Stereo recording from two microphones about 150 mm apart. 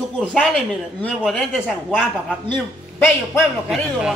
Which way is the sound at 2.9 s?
15° left (ahead or behind).